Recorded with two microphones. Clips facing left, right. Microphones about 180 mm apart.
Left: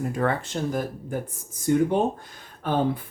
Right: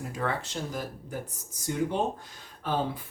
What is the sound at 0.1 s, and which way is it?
Speech, 55° left (ahead or behind).